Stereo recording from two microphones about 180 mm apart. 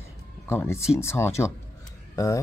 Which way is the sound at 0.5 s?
15° left (ahead or behind).